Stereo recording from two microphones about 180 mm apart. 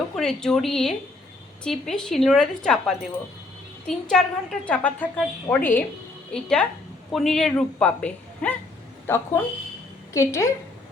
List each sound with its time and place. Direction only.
0.2 s a woman's voice: 5° left (ahead or behind)